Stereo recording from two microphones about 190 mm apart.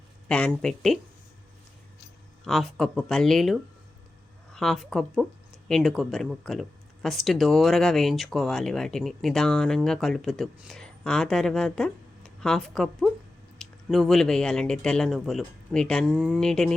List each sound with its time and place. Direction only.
0.3 s speech: 5° left (ahead or behind)
2.4 s speech: centre (ahead or behind)